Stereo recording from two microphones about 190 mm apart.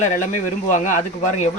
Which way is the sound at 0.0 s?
40° left (ahead or behind).